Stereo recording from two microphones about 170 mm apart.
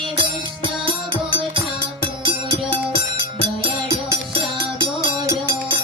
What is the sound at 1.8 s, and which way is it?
Music, 30° right (ahead or behind).